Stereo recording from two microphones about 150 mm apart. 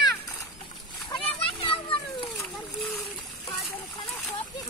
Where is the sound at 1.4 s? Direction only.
35° left (ahead or behind).